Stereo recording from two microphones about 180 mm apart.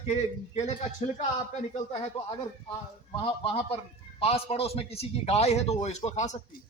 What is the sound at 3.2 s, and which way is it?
A man's voice, 30° left (ahead or behind).